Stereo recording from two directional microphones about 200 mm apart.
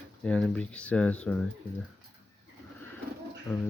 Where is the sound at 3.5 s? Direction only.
10° left (ahead or behind).